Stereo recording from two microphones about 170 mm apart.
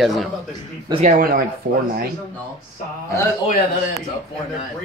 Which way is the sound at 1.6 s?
90° right.